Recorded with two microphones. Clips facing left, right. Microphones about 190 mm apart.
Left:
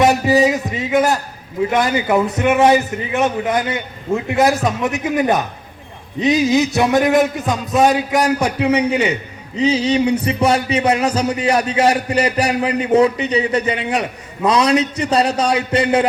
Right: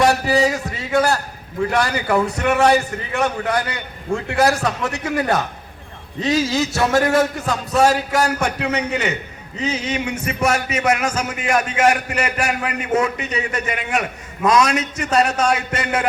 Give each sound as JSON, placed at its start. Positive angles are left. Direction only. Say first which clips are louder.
{"t": 0.0, "sound": "a man's voice", "louder": "left 3 dB", "side_deg": 20}
{"t": 9.6, "sound": "speech", "louder": "left 8 dB", "side_deg": 35}